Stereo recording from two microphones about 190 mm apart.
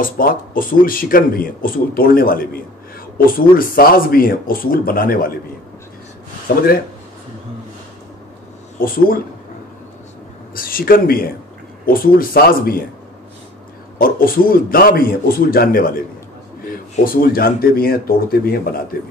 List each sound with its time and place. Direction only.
0.0 s speech: 50° left (ahead or behind)
6.5 s speech: 50° left (ahead or behind)
8.7 s speech: 50° left (ahead or behind)
10.5 s speech: 50° left (ahead or behind)
13.9 s speech: 50° left (ahead or behind)
16.9 s speech: 50° left (ahead or behind)